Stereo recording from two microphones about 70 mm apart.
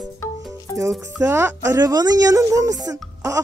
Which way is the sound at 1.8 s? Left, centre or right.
Right.